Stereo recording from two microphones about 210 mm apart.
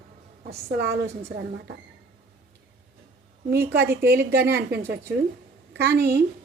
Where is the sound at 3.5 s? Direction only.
50° right (ahead or behind).